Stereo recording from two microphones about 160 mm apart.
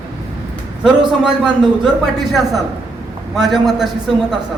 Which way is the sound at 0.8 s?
5° right (ahead or behind).